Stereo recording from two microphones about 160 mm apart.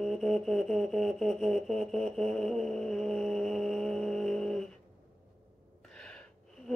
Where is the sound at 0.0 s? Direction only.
Centre (ahead or behind).